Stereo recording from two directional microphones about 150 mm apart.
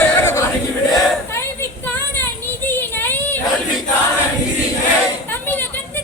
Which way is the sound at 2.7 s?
15° left (ahead or behind).